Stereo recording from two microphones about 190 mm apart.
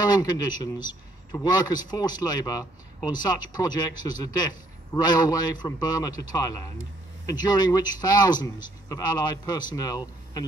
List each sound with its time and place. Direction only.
0.0 s a man's voice: 20° left (ahead or behind)
9.6 s speech: 20° left (ahead or behind)